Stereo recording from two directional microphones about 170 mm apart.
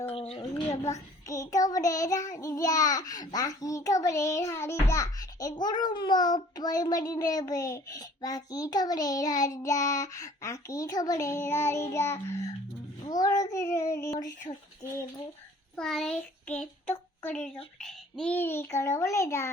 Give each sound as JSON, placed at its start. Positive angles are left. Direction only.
{"t": 0.1, "sound": "a sound", "side_deg": 35}
{"t": 0.5, "sound": "a child's voice", "side_deg": 20}
{"t": 15.7, "sound": "a child's voice", "side_deg": 0}